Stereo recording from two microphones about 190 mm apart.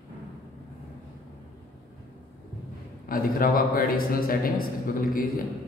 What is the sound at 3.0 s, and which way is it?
A man's voice, 50° left (ahead or behind).